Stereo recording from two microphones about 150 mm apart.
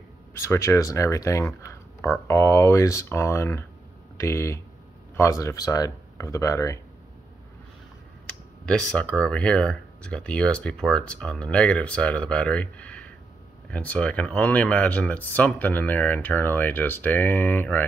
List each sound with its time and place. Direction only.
0.4 s speech: 20° left (ahead or behind)
8.3 s speech: 5° left (ahead or behind)